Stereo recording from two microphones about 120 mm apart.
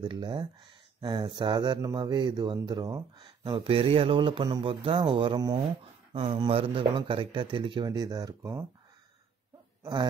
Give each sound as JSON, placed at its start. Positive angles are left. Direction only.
{"t": 0.0, "sound": "speech", "side_deg": -40}
{"t": 3.4, "sound": "speech", "side_deg": -50}